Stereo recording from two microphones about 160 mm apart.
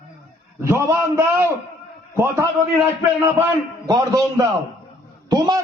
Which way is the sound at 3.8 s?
20° right (ahead or behind).